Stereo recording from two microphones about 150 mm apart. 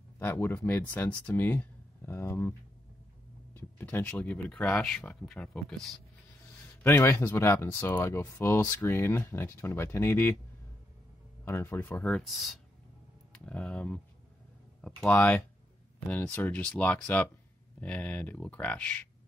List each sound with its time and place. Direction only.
0.2 s speech: 15° left (ahead or behind)
3.5 s speech: 15° left (ahead or behind)
6.8 s speech: 15° left (ahead or behind)
11.4 s speech: 15° left (ahead or behind)
12.3 s speech: centre (ahead or behind)